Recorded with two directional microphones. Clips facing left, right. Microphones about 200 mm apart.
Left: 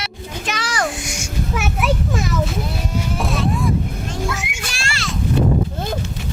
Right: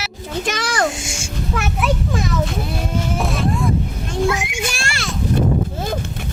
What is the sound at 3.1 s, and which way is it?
Music, centre (ahead or behind).